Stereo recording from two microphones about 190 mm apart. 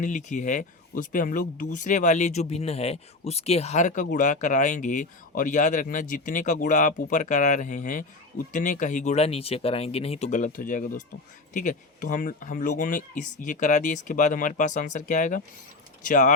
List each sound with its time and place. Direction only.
0.0 s speech: 40° left (ahead or behind)